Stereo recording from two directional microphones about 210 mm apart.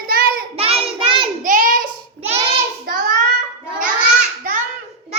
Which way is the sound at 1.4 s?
40° right (ahead or behind).